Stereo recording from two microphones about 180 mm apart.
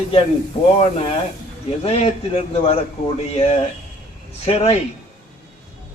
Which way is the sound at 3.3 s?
35° left (ahead or behind).